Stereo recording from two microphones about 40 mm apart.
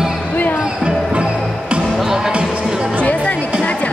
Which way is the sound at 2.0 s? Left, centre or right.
Centre.